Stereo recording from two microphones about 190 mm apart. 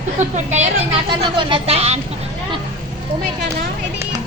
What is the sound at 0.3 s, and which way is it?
Speech, 40° right (ahead or behind).